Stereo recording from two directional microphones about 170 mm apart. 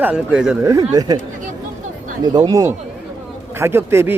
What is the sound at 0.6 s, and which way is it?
Speech, 20° right (ahead or behind).